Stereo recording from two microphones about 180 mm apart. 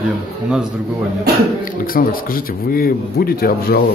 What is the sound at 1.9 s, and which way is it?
Speech, 50° left (ahead or behind).